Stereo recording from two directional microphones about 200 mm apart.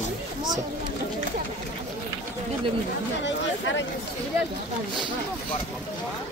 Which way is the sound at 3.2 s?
70° left (ahead or behind).